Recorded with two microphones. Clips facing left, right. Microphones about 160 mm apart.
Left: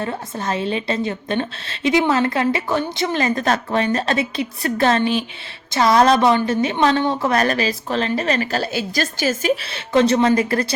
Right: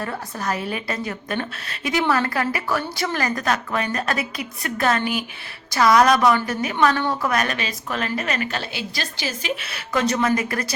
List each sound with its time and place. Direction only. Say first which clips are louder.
0.0 s a woman's voice: left 3 dB; 25° left (ahead or behind); by 9.5 s 45° left (ahead or behind)
9.6 s a woman's voice: left 5 dB; 30° left (ahead or behind)